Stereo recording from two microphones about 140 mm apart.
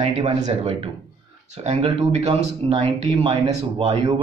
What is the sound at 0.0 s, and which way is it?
Speech, 50° right (ahead or behind).